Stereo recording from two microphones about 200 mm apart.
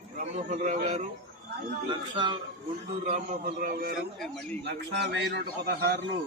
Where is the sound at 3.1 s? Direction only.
50° right (ahead or behind).